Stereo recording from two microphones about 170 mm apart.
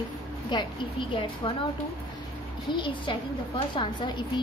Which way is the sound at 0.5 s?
25° left (ahead or behind).